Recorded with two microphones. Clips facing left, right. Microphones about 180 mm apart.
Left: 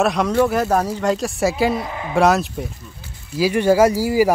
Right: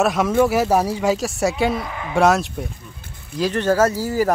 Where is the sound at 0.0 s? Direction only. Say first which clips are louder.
Even; 5° right (ahead or behind).